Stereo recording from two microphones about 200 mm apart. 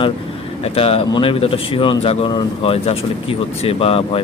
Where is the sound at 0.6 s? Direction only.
30° left (ahead or behind).